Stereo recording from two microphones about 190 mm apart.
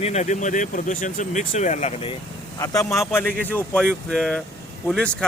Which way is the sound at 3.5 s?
5° left (ahead or behind).